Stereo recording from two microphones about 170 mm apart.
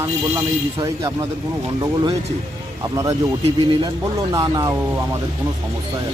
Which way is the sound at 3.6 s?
25° right (ahead or behind).